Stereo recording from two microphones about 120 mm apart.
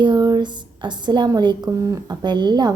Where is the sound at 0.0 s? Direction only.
35° right (ahead or behind).